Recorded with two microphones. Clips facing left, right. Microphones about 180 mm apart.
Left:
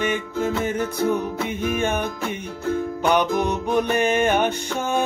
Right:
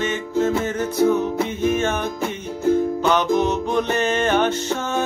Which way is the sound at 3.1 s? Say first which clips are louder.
Even; 10° left (ahead or behind).